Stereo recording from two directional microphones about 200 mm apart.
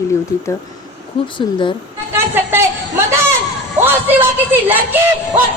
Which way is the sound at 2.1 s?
10° right (ahead or behind).